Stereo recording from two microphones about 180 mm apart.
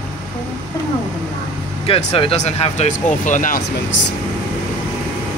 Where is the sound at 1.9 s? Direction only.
35° left (ahead or behind).